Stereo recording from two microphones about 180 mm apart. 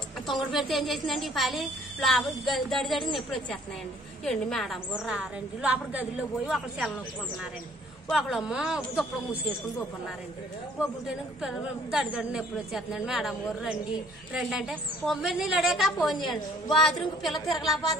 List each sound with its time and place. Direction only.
0.3 s a woman's voice: centre (ahead or behind)
8.1 s a woman's voice: centre (ahead or behind)
10.8 s a woman's voice: 5° right (ahead or behind)
16.2 s a woman's voice: 25° left (ahead or behind)
17.2 s a woman's voice: centre (ahead or behind)